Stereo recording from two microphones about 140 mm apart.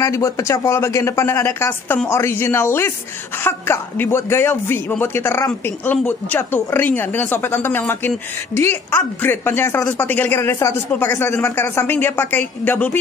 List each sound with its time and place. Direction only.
0.0 s speech: 20° left (ahead or behind)